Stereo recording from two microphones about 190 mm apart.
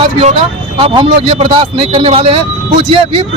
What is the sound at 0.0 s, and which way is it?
Speech, 30° right (ahead or behind).